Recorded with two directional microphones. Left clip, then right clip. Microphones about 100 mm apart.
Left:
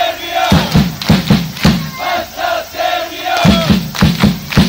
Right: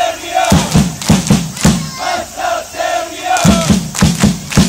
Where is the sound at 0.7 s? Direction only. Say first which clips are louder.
Even; 10° left (ahead or behind).